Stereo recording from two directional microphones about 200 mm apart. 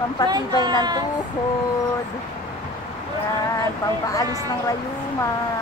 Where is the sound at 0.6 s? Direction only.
20° right (ahead or behind).